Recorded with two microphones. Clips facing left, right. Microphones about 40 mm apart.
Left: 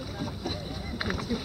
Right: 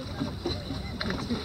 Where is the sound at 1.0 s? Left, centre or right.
Centre.